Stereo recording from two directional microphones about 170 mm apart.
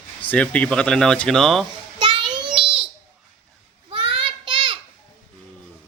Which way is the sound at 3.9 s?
30° right (ahead or behind).